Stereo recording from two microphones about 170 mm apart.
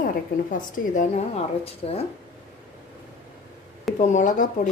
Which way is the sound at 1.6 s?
35° left (ahead or behind).